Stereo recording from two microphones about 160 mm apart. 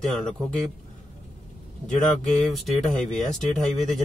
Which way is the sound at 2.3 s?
Centre (ahead or behind).